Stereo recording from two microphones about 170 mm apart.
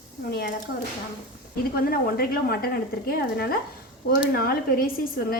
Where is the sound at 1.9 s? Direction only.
60° left (ahead or behind).